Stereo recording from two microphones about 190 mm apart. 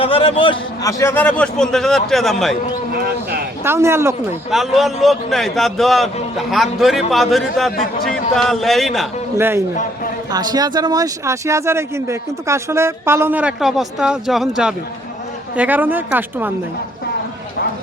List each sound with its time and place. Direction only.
0.0 s a man's voice: 30° left (ahead or behind); by 2.6 s centre (ahead or behind)
2.9 s a sound: 55° right (ahead or behind)
3.6 s speech: 15° right (ahead or behind)
4.5 s a man's voice: centre (ahead or behind)
9.4 s speech: 15° right (ahead or behind)